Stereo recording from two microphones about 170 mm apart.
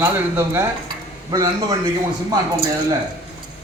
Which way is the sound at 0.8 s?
25° right (ahead or behind).